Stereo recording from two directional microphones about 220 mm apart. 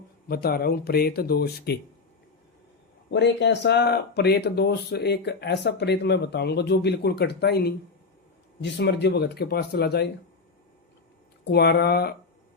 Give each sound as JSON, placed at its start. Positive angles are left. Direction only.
{"t": 0.3, "sound": "speech", "side_deg": 45}
{"t": 3.1, "sound": "speech", "side_deg": 55}
{"t": 11.5, "sound": "speech", "side_deg": 45}